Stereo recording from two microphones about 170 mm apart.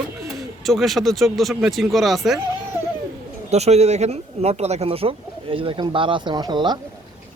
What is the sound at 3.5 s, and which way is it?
Speech, 40° right (ahead or behind).